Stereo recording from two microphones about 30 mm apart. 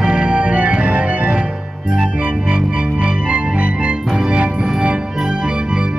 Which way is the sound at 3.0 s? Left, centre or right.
Right.